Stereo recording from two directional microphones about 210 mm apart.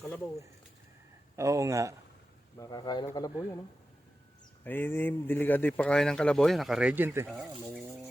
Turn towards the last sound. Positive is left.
turn(degrees=-10)  # may be behind; listen again after turning